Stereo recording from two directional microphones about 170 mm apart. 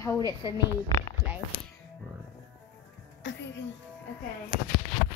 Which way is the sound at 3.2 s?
90° left.